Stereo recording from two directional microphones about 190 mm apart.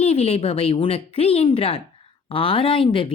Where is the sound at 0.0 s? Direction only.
35° left (ahead or behind).